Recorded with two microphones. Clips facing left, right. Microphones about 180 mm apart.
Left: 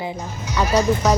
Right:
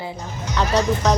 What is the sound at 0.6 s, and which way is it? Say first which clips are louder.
Speech: left 2 dB; 5° left (ahead or behind).